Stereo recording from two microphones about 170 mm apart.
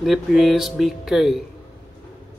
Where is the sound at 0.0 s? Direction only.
Centre (ahead or behind).